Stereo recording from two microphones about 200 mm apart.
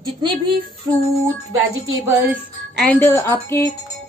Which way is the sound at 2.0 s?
10° right (ahead or behind).